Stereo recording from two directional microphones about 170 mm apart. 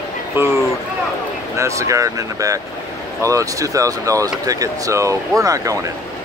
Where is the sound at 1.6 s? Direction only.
20° right (ahead or behind).